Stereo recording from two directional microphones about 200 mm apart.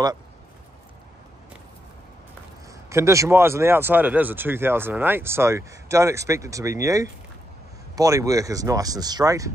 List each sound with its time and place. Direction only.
2.7 s speech: 15° right (ahead or behind)